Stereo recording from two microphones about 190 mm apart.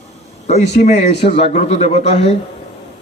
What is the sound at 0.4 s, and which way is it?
A man's voice, 35° left (ahead or behind).